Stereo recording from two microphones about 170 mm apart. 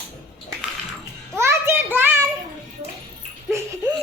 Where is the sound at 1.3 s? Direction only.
15° right (ahead or behind).